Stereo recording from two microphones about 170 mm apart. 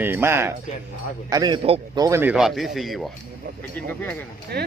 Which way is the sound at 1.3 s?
25° right (ahead or behind).